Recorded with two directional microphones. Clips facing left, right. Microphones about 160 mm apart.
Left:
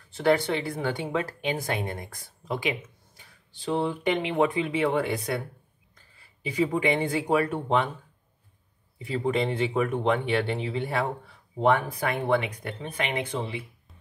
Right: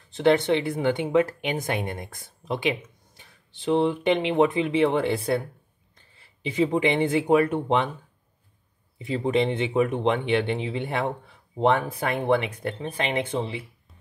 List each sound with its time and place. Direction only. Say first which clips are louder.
0.1 s speech: right 3 dB; 20° right (ahead or behind)
8.9 s speech: right 3 dB; 20° right (ahead or behind)